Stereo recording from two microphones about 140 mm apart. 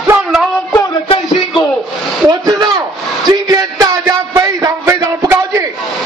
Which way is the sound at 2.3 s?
30° right (ahead or behind).